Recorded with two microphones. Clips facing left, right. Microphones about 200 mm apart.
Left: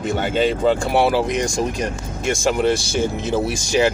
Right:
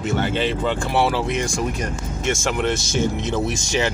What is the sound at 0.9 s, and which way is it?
Speech, 15° left (ahead or behind).